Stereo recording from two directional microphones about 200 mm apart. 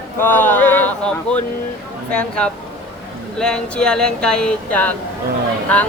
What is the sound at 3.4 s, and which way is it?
Speech, 5° left (ahead or behind).